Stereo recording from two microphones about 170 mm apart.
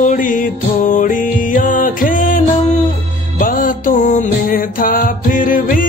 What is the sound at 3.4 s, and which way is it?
Music, 55° left (ahead or behind).